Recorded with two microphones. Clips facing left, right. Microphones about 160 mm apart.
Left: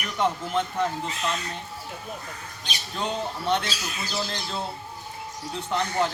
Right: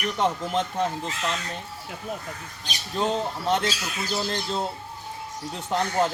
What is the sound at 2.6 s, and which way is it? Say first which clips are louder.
Speech: right 4 dB; 40° right (ahead or behind).